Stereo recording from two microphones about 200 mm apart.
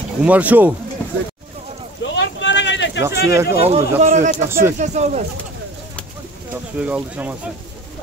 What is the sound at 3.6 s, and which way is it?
Speech, 30° right (ahead or behind).